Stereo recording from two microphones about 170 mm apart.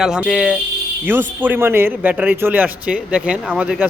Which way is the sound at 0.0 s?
5° right (ahead or behind).